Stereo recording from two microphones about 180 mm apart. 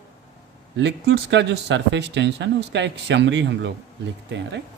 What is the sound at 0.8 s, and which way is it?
Speech, 70° right (ahead or behind).